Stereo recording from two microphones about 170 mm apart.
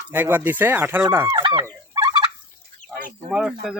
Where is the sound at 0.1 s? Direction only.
10° right (ahead or behind).